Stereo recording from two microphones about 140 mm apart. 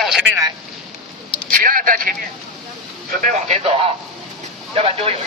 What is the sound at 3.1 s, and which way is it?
A man's voice, 65° right (ahead or behind).